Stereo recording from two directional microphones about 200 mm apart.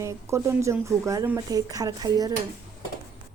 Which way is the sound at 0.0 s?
15° right (ahead or behind).